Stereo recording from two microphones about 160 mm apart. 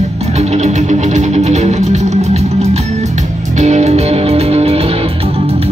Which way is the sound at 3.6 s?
45° right (ahead or behind).